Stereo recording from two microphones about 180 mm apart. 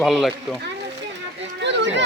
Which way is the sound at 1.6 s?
80° right.